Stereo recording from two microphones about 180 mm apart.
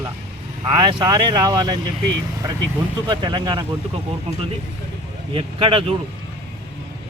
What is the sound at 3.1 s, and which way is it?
Speech, 25° right (ahead or behind).